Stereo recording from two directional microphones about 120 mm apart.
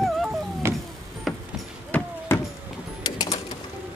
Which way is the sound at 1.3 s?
Centre (ahead or behind).